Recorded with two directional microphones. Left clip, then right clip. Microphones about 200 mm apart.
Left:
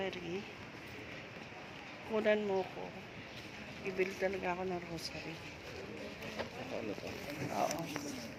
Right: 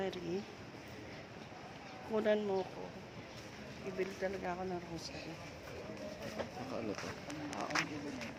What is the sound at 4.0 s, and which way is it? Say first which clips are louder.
Speech: left 3 dB; 20° left (ahead or behind).